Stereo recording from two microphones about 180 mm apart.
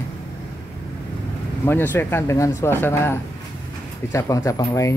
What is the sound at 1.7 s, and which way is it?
Speech, 10° left (ahead or behind).